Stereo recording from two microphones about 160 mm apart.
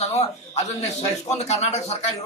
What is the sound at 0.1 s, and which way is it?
A man's voice, 40° left (ahead or behind).